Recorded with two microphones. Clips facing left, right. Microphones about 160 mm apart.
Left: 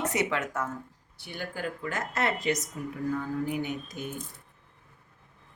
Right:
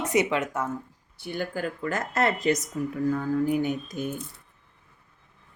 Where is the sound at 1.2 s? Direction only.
45° right (ahead or behind).